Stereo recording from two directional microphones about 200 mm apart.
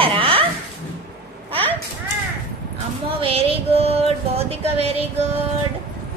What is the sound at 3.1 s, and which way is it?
Music, 30° right (ahead or behind).